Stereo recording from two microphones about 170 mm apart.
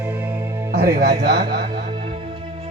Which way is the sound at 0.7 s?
65° right (ahead or behind).